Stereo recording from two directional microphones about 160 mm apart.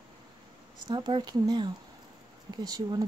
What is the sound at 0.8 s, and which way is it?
Speech, 30° right (ahead or behind).